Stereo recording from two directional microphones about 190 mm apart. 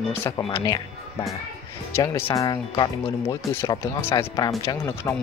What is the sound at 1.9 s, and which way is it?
Speech, 15° left (ahead or behind).